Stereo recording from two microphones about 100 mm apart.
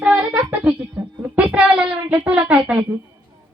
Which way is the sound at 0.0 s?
15° right (ahead or behind).